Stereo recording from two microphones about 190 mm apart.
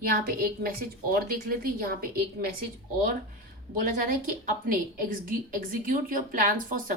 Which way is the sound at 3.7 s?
45° right (ahead or behind).